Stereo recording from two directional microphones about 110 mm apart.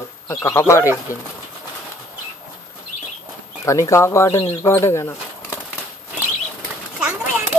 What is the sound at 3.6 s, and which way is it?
Speech, 30° left (ahead or behind).